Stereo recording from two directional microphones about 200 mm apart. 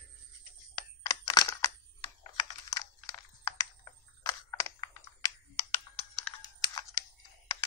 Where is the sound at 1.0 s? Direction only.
20° left (ahead or behind).